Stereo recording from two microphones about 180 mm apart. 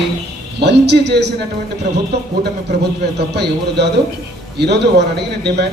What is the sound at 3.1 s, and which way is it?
A man's voice, 70° right (ahead or behind).